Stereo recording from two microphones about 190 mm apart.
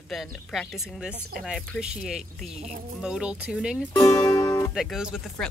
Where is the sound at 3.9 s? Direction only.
20° left (ahead or behind).